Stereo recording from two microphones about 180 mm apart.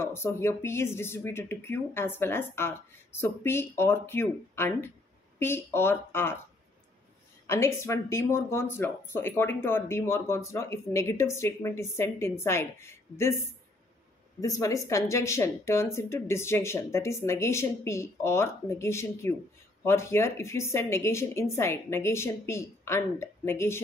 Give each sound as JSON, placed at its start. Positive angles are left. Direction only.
{"t": 0.0, "sound": "speech", "side_deg": 15}
{"t": 7.4, "sound": "speech", "side_deg": 15}
{"t": 14.4, "sound": "speech", "side_deg": 20}